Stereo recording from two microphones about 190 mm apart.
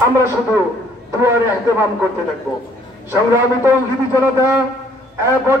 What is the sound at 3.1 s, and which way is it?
Speech, 10° right (ahead or behind).